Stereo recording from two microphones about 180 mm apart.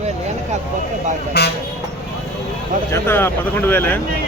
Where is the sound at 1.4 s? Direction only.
65° left (ahead or behind).